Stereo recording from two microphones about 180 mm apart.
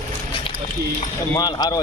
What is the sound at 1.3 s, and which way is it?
Speech, 20° left (ahead or behind).